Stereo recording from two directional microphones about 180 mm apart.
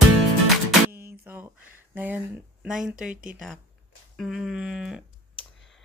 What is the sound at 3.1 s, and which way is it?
Speech, 50° right (ahead or behind).